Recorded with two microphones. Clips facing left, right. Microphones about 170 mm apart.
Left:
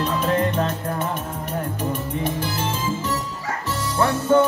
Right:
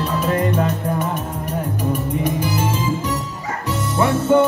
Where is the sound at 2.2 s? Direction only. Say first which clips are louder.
Right 4 dB; 15° right (ahead or behind).